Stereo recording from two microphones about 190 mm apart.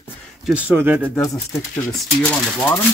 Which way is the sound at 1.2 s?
15° left (ahead or behind).